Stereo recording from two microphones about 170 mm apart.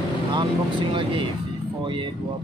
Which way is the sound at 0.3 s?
30° right (ahead or behind).